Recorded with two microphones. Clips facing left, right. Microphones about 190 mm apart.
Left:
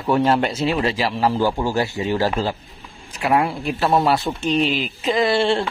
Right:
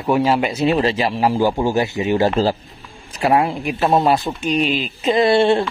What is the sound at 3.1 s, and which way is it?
A man's voice, 30° right (ahead or behind).